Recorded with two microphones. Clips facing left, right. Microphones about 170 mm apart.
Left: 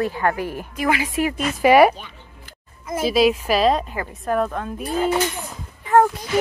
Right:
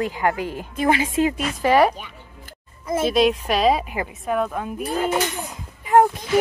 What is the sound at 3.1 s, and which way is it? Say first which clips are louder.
Speech: left 2 dB; 5° left (ahead or behind).